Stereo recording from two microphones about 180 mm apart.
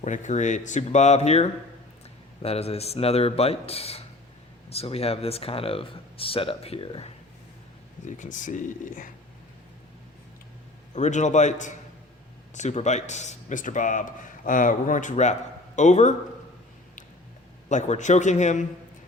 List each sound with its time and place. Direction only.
0.0 s speech: 40° left (ahead or behind)
8.0 s speech: 45° left (ahead or behind)
10.9 s speech: 40° left (ahead or behind)
17.7 s speech: 40° left (ahead or behind)